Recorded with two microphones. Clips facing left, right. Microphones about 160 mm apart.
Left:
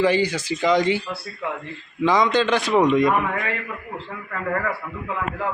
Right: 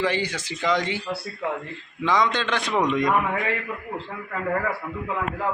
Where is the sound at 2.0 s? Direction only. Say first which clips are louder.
Left 4 dB; 10° left (ahead or behind).